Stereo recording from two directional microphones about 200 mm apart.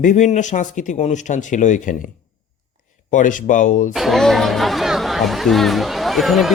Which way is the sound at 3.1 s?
40° left (ahead or behind).